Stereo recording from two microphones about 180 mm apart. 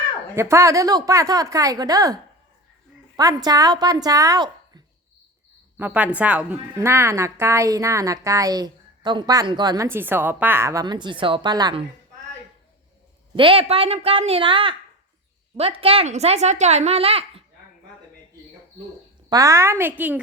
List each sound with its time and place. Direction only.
0.3 s a woman's voice: 15° right (ahead or behind)
3.2 s a woman's voice: 20° right (ahead or behind)
5.7 s a woman's voice: 10° right (ahead or behind); by 11.9 s 25° right (ahead or behind)
13.3 s speech: 30° right (ahead or behind)
19.3 s a woman's voice: 20° right (ahead or behind)